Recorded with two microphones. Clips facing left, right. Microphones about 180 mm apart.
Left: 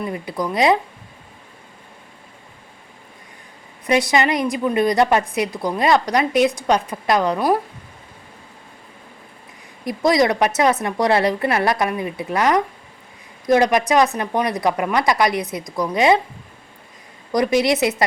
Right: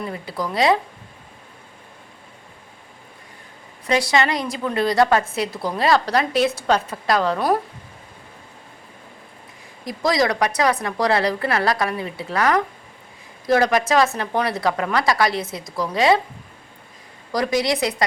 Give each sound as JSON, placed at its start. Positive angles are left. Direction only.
{"t": 0.1, "sound": "a woman's voice", "side_deg": 15}
{"t": 3.8, "sound": "a woman's voice", "side_deg": 20}
{"t": 9.8, "sound": "a woman's voice", "side_deg": 20}
{"t": 17.3, "sound": "a woman's voice", "side_deg": 20}